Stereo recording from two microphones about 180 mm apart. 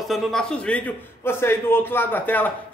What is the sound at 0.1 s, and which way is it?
A man's voice, 5° left (ahead or behind).